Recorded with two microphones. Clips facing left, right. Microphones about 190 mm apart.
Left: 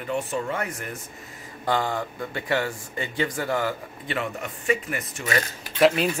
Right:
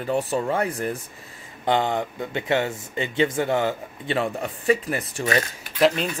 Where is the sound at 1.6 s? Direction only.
20° right (ahead or behind).